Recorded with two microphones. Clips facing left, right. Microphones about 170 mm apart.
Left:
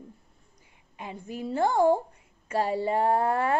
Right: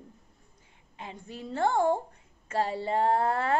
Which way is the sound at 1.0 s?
10° left (ahead or behind).